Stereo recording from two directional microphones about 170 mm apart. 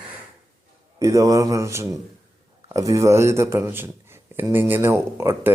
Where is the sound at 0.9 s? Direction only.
20° right (ahead or behind).